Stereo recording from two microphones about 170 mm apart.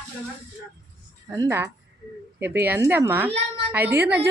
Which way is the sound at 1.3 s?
15° right (ahead or behind).